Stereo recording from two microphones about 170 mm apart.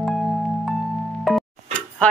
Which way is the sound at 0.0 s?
Centre (ahead or behind).